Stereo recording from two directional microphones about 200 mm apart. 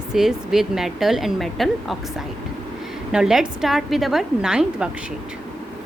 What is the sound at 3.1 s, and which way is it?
A woman's voice, 5° right (ahead or behind).